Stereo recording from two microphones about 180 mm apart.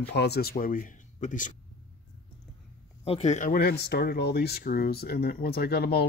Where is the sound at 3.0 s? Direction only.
35° left (ahead or behind).